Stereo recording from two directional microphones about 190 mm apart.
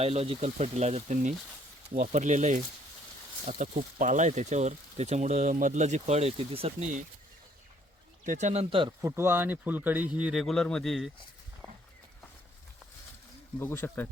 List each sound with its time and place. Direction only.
0.0 s speech: 30° right (ahead or behind)
8.2 s speech: 40° right (ahead or behind)
9.0 s speech: 15° right (ahead or behind)
13.6 s speech: 10° left (ahead or behind)